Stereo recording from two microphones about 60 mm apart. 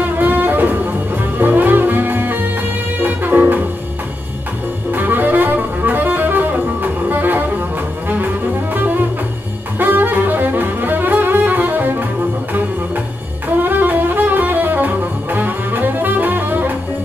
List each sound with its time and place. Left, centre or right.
0.2 s saxophone: right
1.4 s music: right
4.9 s music: right
8.7 s jazz: right
9.8 s music: right
13.6 s music: right